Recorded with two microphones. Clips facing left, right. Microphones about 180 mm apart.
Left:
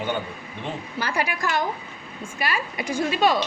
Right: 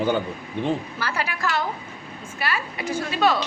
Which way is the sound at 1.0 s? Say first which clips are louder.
Left 1 dB; 15° left (ahead or behind).